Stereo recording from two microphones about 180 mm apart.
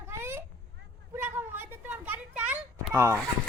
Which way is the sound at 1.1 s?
10° right (ahead or behind).